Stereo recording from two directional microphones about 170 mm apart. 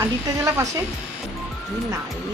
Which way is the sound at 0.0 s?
15° right (ahead or behind).